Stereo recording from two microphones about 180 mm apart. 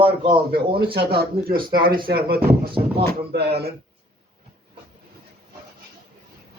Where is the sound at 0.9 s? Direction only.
60° right (ahead or behind).